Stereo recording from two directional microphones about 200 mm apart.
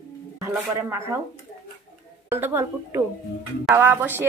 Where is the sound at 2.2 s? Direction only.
10° right (ahead or behind).